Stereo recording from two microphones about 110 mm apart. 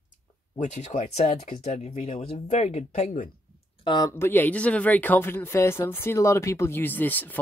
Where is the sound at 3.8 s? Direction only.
45° left (ahead or behind).